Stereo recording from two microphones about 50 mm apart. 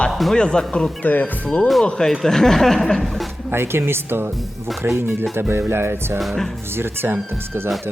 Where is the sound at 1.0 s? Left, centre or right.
Left.